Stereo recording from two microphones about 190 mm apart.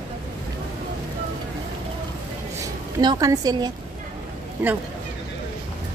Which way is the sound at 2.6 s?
20° right (ahead or behind).